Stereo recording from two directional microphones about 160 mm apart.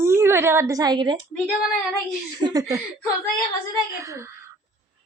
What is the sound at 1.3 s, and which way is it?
Speech, centre (ahead or behind).